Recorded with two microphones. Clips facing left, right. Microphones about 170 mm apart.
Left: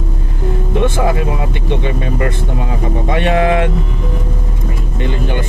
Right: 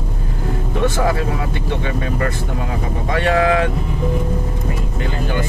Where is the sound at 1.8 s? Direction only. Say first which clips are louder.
Left 2 dB; 20° left (ahead or behind).